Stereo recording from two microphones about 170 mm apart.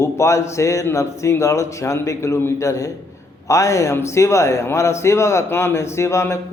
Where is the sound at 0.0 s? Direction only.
15° left (ahead or behind).